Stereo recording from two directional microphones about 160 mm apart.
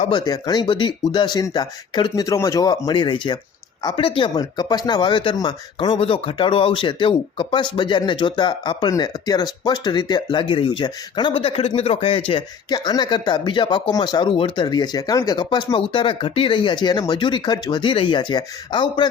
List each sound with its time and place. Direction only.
0.1 s speech: 25° left (ahead or behind)